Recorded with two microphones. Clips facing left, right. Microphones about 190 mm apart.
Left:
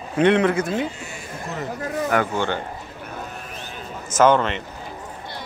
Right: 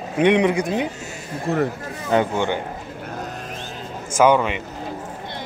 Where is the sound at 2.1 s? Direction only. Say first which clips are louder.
Right 5 dB; 20° right (ahead or behind).